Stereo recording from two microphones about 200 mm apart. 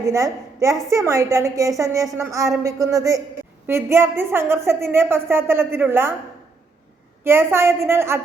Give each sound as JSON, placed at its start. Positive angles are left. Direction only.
{"t": 0.0, "sound": "a woman's voice", "side_deg": -15}
{"t": 7.3, "sound": "a woman's voice", "side_deg": -10}